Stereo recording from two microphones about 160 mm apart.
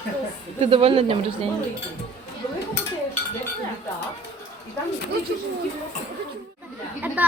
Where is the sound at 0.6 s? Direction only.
35° right (ahead or behind).